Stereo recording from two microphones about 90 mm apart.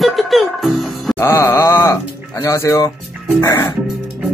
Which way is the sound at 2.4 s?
35° left (ahead or behind).